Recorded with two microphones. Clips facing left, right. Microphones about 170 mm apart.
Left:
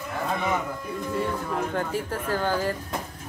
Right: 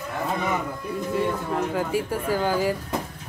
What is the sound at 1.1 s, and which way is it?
Speech, 5° right (ahead or behind).